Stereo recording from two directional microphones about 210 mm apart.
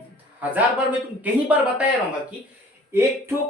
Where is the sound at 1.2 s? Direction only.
5° right (ahead or behind).